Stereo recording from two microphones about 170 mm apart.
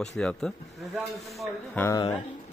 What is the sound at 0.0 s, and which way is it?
Speech, 5° left (ahead or behind).